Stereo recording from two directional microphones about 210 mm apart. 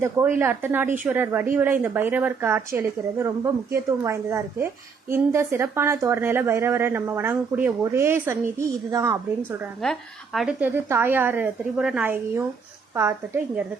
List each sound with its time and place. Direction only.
0.0 s a woman's voice: 10° right (ahead or behind)
9.8 s a woman's voice: centre (ahead or behind)